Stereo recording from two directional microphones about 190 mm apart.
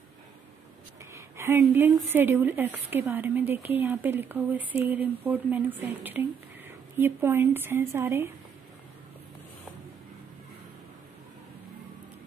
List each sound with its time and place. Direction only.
1.1 s a woman's voice: 15° right (ahead or behind)